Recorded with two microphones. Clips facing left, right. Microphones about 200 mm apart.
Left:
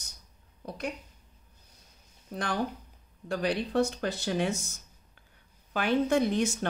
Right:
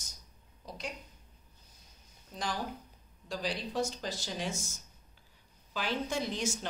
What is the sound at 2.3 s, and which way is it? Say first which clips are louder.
Speech: left 6 dB; 60° left (ahead or behind).